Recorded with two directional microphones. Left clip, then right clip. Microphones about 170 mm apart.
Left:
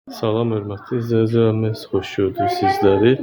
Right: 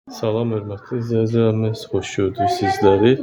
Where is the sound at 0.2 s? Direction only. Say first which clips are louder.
Left 1 dB; 5° left (ahead or behind).